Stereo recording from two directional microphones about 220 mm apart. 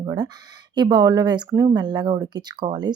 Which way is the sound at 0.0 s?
20° right (ahead or behind).